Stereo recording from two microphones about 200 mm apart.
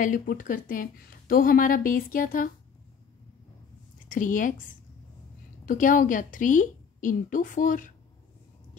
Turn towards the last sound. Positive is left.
turn(degrees=40)  # may be behind; listen again after turning